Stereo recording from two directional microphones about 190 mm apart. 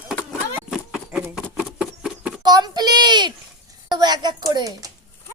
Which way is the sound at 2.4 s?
20° right (ahead or behind).